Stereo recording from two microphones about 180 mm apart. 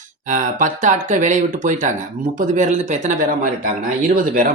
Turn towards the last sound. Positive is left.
turn(degrees=-50)  # may be behind; listen again after turning